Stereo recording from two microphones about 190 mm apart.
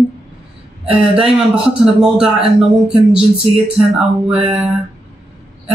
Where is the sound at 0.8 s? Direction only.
30° right (ahead or behind).